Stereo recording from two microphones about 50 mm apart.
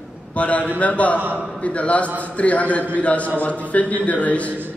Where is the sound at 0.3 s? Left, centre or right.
Left.